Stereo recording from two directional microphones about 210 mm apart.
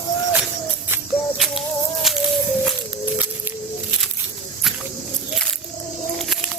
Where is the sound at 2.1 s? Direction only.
Centre (ahead or behind).